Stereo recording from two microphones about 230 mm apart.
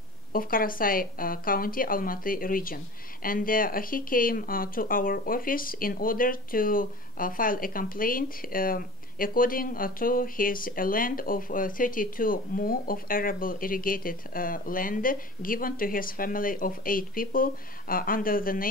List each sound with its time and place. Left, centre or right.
0.3 s a woman's voice: left